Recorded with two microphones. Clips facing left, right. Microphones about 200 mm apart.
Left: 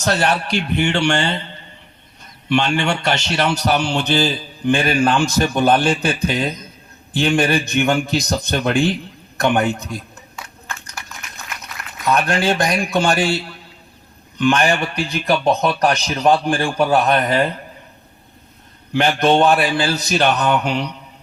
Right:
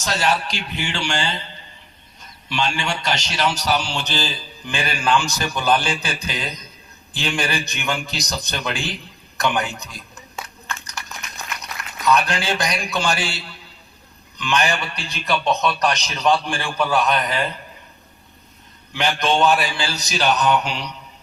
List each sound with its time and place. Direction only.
0.0 s a man's voice: 60° left (ahead or behind)
2.5 s a man's voice: 60° left (ahead or behind)
12.0 s a man's voice: 50° left (ahead or behind)
14.3 s a man's voice: 50° left (ahead or behind)
18.9 s a man's voice: 55° left (ahead or behind)